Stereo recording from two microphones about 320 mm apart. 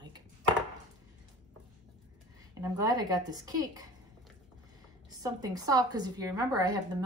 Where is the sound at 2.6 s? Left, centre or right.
Centre.